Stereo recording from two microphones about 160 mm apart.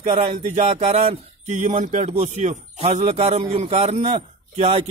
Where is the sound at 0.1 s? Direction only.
45° right (ahead or behind).